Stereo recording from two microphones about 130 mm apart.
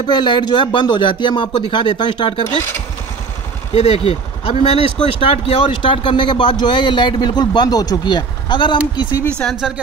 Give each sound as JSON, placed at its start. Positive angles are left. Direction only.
{"t": 0.0, "sound": "speech", "side_deg": 35}
{"t": 3.7, "sound": "speech", "side_deg": 50}
{"t": 9.4, "sound": "speech", "side_deg": 0}